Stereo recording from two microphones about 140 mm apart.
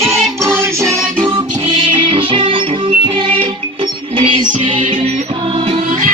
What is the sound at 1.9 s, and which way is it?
Music, 35° right (ahead or behind).